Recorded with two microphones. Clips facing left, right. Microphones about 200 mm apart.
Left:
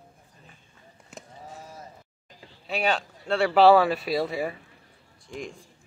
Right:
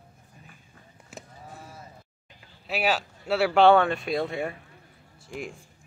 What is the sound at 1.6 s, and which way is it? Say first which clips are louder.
Bleat: left 2 dB; 40° left (ahead or behind).